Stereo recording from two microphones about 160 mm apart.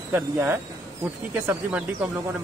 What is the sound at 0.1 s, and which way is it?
Speech, 15° right (ahead or behind).